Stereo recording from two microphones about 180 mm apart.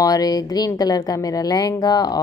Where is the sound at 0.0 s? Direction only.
20° left (ahead or behind).